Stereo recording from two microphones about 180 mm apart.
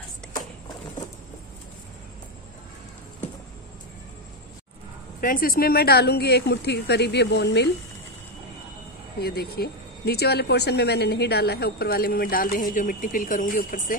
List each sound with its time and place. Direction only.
5.2 s speech: 50° left (ahead or behind); by 7.7 s 70° left (ahead or behind)
9.2 s speech: 60° left (ahead or behind)